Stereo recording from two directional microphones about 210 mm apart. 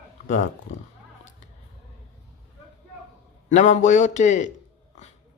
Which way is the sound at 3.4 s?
35° left (ahead or behind).